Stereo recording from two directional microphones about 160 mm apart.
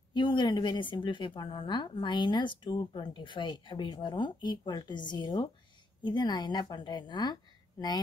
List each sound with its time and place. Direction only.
0.1 s a woman's voice: 30° left (ahead or behind)